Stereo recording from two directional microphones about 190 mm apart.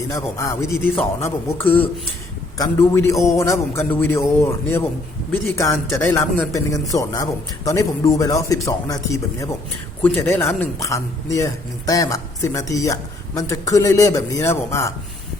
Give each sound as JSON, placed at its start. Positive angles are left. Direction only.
{"t": 0.1, "sound": "a man's voice", "side_deg": 15}